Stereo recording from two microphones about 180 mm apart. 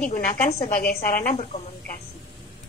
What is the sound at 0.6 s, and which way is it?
Speech, 50° left (ahead or behind).